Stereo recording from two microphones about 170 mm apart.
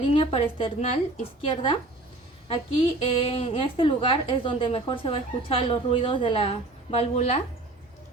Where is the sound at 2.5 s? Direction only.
35° left (ahead or behind).